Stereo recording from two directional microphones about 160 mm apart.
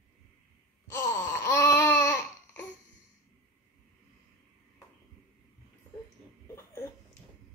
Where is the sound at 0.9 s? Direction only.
15° left (ahead or behind).